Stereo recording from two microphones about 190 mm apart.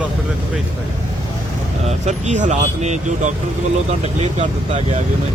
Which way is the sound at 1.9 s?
35° right (ahead or behind).